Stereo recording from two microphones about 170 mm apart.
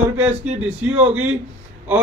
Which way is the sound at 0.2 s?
10° right (ahead or behind).